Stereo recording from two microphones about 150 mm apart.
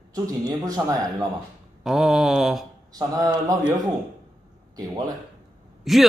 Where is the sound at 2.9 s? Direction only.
25° right (ahead or behind).